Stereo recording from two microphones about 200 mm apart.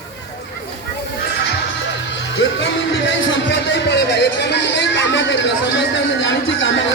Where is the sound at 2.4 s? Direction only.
65° left (ahead or behind).